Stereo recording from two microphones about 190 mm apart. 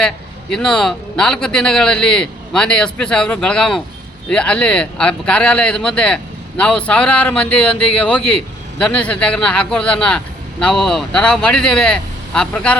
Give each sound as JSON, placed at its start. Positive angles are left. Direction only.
{"t": 0.5, "sound": "speech", "side_deg": 5}